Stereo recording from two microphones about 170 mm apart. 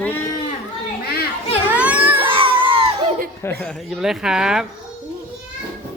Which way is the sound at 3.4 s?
10° left (ahead or behind).